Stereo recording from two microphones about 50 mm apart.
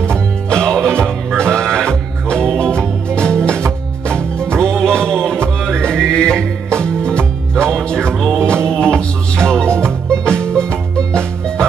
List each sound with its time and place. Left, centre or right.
0.0 s music: centre
9.8 s music: right
10.4 s music: centre